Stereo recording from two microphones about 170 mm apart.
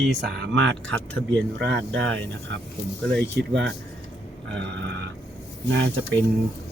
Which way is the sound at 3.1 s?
90° right.